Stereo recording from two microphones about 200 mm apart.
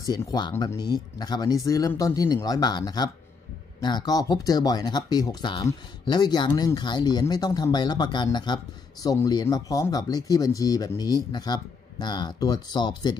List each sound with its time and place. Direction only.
0.1 s speech: 20° left (ahead or behind)